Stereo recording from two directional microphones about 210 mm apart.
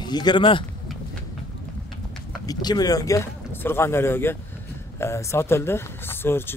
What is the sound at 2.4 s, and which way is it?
Speech, 20° left (ahead or behind).